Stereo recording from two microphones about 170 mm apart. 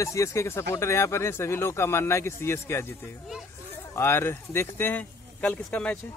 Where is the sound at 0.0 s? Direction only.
20° left (ahead or behind).